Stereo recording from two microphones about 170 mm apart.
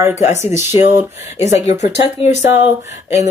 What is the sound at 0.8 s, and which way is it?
Speech, 40° left (ahead or behind).